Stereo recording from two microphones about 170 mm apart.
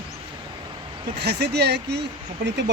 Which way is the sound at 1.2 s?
75° right (ahead or behind).